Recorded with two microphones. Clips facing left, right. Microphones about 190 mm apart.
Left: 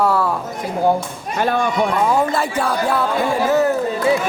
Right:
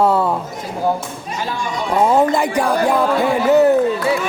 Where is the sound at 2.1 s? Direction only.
20° right (ahead or behind).